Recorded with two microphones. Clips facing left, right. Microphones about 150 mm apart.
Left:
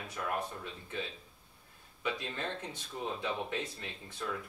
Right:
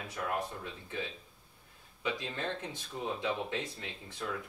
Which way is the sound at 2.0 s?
20° right (ahead or behind).